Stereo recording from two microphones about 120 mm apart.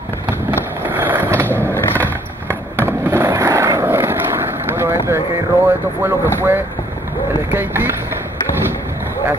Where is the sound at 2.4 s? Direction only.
20° right (ahead or behind).